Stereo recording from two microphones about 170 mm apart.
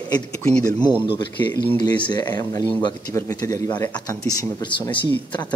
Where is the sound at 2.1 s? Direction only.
25° left (ahead or behind).